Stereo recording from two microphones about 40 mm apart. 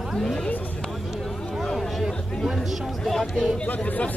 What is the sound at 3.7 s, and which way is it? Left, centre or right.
Speech, left.